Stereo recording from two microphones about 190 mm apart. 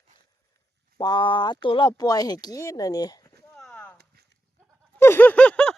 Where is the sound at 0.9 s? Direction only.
25° left (ahead or behind).